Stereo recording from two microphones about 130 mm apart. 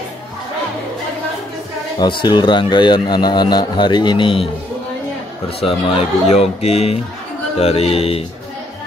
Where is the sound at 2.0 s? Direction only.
35° left (ahead or behind).